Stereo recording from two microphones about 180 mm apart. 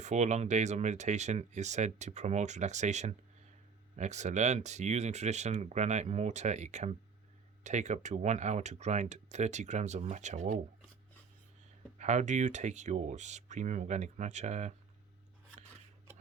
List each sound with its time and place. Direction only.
0.0 s speech: 40° right (ahead or behind)
11.9 s speech: 40° right (ahead or behind)